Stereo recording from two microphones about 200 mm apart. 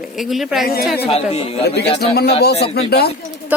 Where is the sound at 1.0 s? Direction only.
30° left (ahead or behind).